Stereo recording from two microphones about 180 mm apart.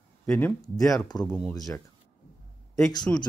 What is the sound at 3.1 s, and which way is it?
Speech, 10° left (ahead or behind).